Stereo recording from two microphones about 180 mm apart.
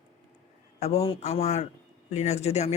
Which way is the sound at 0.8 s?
35° left (ahead or behind).